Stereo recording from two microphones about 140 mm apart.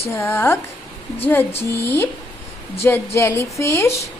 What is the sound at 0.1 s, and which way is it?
A woman's voice, 15° left (ahead or behind).